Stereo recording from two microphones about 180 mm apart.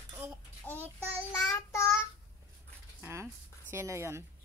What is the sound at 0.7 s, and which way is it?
Child singing, 10° left (ahead or behind).